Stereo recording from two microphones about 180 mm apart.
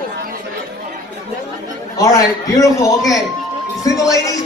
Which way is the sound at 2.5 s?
20° left (ahead or behind).